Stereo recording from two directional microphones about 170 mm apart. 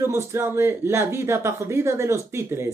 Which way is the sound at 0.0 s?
15° right (ahead or behind).